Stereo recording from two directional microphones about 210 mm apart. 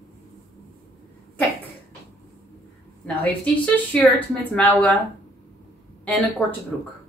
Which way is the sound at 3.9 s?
10° left (ahead or behind).